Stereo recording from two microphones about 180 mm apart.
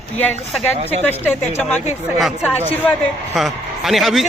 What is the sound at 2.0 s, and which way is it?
Speech, centre (ahead or behind).